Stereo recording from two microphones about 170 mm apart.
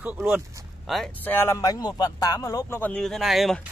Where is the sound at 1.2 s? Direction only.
15° left (ahead or behind).